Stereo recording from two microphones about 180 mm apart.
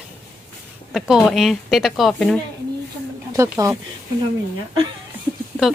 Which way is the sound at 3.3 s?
15° right (ahead or behind).